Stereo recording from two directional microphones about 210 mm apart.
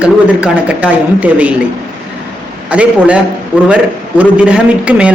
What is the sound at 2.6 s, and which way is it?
Speech, 5° right (ahead or behind).